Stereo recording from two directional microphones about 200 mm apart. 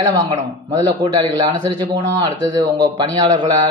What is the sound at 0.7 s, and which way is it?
Speech, 20° right (ahead or behind).